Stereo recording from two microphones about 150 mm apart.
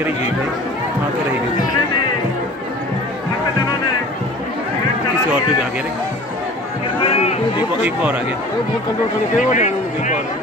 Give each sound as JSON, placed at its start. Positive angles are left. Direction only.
{"t": 7.8, "sound": "speech", "side_deg": -10}
{"t": 9.4, "sound": "a man's voice", "side_deg": 55}